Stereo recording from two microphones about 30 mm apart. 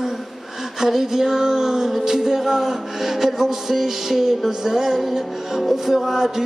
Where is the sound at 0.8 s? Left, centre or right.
Centre.